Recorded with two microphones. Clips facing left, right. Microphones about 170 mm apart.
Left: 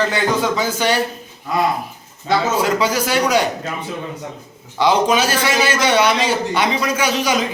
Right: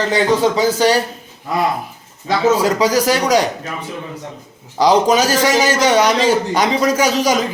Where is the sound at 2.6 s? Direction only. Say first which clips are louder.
Right 3 dB; 35° right (ahead or behind).